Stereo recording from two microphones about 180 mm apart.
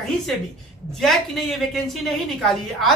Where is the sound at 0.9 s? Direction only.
Centre (ahead or behind).